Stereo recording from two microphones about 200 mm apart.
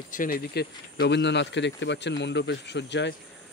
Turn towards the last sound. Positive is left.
turn(degrees=60)  # may be behind; listen again after turning